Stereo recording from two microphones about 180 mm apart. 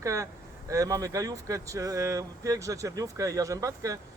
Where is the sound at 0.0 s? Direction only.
15° right (ahead or behind).